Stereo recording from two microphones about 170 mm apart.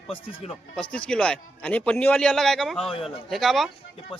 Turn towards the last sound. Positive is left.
turn(degrees=0)  # may be behind; listen again after turning